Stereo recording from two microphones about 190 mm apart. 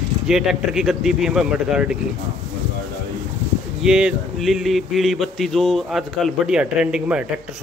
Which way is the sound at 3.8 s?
5° right (ahead or behind).